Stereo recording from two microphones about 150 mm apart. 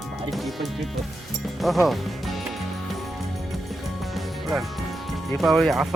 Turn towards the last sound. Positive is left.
turn(degrees=0)  # may be behind; listen again after turning